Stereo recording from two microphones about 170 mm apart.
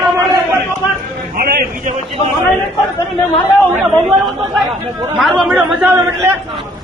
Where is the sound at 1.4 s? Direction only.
60° right (ahead or behind).